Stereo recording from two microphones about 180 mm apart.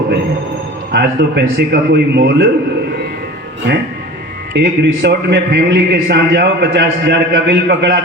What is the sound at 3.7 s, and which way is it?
A man's voice, 70° right (ahead or behind).